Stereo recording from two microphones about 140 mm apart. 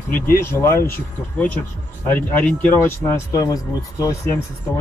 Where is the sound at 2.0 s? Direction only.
10° left (ahead or behind).